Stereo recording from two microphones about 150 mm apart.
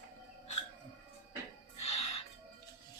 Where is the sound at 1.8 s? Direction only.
45° left (ahead or behind).